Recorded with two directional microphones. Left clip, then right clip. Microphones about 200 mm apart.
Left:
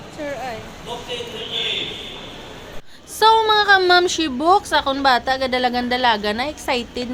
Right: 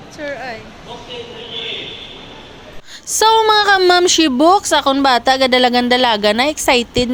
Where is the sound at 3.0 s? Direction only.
40° right (ahead or behind).